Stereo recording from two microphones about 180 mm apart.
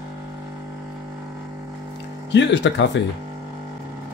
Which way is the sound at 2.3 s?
80° left.